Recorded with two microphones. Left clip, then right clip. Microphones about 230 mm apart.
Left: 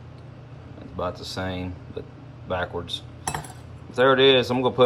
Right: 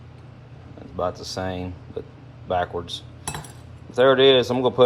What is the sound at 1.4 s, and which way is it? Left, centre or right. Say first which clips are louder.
Speech: right 2 dB; centre.